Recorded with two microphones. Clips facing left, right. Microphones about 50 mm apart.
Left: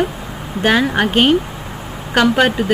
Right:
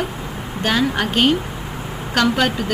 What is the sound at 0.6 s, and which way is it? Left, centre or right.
Speech, centre.